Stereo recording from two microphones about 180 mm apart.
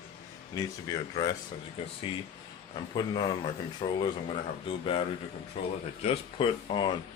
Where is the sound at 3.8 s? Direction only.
30° left (ahead or behind).